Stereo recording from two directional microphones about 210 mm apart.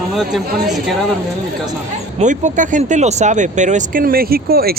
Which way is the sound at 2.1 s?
35° right (ahead or behind).